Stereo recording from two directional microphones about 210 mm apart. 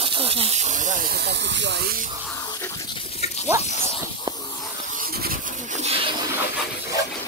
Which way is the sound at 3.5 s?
15° right (ahead or behind).